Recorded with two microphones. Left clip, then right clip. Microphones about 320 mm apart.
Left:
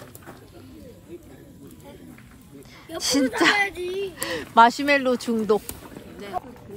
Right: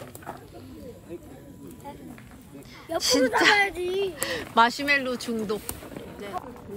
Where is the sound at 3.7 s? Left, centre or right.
Right.